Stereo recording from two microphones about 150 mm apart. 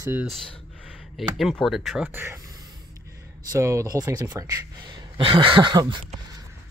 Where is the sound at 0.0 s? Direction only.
15° right (ahead or behind).